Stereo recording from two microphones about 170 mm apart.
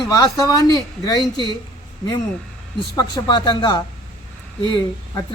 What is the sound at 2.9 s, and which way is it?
Speech, 20° left (ahead or behind).